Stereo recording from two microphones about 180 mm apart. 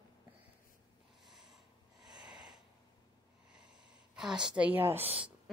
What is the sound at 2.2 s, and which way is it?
Sniff, 5° right (ahead or behind).